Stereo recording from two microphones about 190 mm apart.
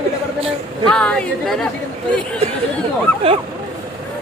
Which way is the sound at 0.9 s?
5° left (ahead or behind).